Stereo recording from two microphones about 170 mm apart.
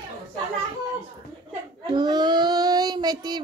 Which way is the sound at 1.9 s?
25° right (ahead or behind).